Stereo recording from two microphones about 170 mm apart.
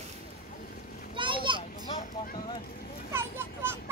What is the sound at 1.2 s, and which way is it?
Children playing, 30° right (ahead or behind).